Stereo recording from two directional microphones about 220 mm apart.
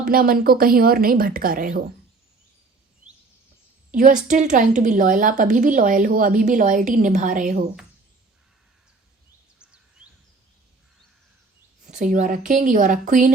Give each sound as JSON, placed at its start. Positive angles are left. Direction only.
{"t": 0.1, "sound": "a woman's voice", "side_deg": -40}
{"t": 3.9, "sound": "a woman's voice", "side_deg": -35}
{"t": 9.6, "sound": "a sound", "side_deg": -5}
{"t": 11.9, "sound": "a woman's voice", "side_deg": -35}